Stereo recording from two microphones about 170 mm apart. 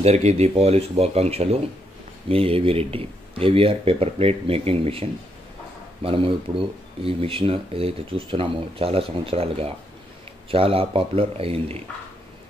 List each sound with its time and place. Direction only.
0.0 s speech: 40° right (ahead or behind)